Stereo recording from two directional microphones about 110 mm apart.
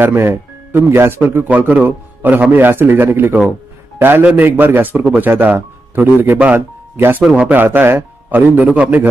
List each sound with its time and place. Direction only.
0.0 s speech: 20° right (ahead or behind)